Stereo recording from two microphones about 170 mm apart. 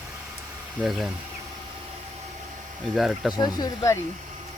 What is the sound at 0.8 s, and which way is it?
Speech, centre (ahead or behind).